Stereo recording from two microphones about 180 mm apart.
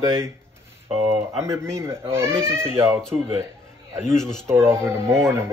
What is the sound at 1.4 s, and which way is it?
Speech, 15° right (ahead or behind).